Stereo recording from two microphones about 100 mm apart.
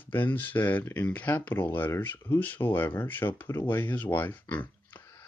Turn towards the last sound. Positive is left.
turn(degrees=15)  # may be behind; listen again after turning